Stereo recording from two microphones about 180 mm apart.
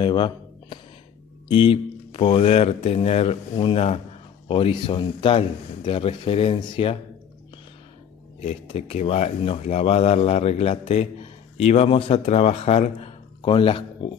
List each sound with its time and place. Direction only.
0.0 s a sound: 25° left (ahead or behind)
1.5 s speech: 30° left (ahead or behind)
8.5 s speech: 35° left (ahead or behind)